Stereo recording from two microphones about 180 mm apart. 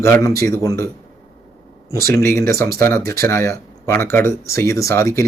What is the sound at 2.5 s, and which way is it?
Speech, 15° left (ahead or behind).